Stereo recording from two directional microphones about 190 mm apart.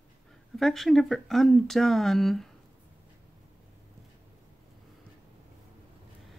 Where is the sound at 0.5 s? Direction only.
Centre (ahead or behind).